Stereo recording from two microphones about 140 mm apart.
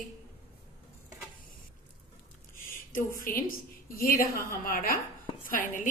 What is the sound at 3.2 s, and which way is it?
A woman's voice, 90° left.